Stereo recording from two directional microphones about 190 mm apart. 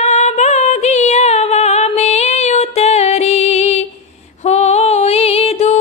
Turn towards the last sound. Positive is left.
turn(degrees=35)  # may be behind; listen again after turning